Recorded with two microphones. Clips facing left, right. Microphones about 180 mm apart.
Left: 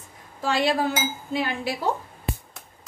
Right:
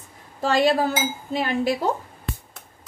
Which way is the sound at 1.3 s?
45° right (ahead or behind).